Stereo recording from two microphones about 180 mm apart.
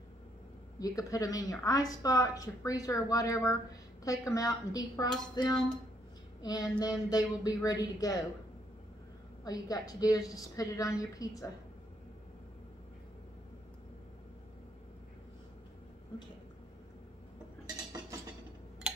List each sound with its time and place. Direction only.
0.7 s a woman's voice: 20° left (ahead or behind)
9.4 s a woman's voice: 20° left (ahead or behind)